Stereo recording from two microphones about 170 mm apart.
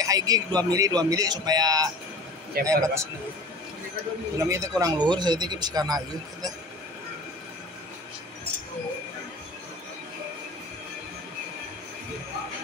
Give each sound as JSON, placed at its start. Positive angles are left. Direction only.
{"t": 0.0, "sound": "speech", "side_deg": -20}
{"t": 4.4, "sound": "speech", "side_deg": -20}